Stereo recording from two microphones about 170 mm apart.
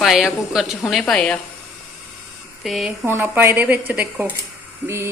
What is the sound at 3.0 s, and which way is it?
A woman's voice, 15° right (ahead or behind).